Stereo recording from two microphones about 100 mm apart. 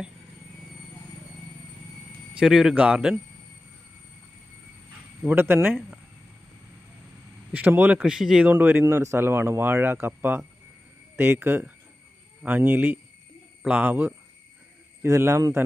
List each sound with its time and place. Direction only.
2.3 s speech: 5° right (ahead or behind)
5.2 s speech: 20° right (ahead or behind)
7.5 s speech: 20° right (ahead or behind)
8.0 s speech: 5° right (ahead or behind)
8.5 s speech: 20° right (ahead or behind)
15.0 s speech: 25° right (ahead or behind)